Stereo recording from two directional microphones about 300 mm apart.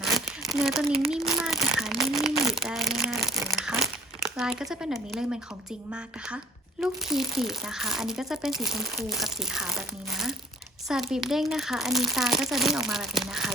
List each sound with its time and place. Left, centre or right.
0.0 s crumpling: centre
1.1 s a sound: centre
5.9 s speech: centre